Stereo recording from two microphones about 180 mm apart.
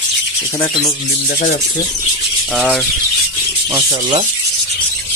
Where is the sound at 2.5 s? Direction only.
5° left (ahead or behind).